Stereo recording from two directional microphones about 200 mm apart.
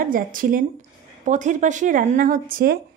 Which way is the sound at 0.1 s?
45° right (ahead or behind).